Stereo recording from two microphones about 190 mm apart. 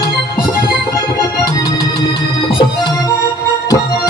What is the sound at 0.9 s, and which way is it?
Organ, 20° left (ahead or behind).